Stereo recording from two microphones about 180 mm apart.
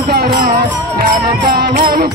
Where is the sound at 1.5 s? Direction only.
60° right (ahead or behind).